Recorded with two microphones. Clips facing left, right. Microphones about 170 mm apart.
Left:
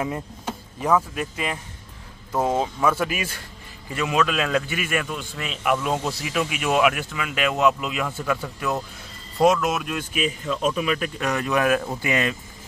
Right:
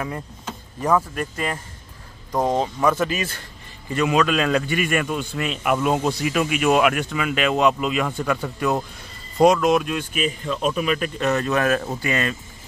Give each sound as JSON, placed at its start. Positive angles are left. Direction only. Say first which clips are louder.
{"t": 0.7, "sound": "speech", "louder": "right 1 dB", "side_deg": 5}
{"t": 10.6, "sound": "speech", "louder": "right 2 dB", "side_deg": -5}